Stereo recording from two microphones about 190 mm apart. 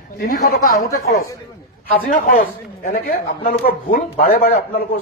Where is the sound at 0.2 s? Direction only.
55° left (ahead or behind).